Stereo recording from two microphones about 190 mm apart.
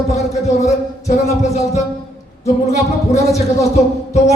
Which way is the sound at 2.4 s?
35° left (ahead or behind).